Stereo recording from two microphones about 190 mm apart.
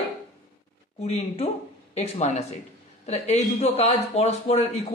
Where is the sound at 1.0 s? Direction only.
30° left (ahead or behind).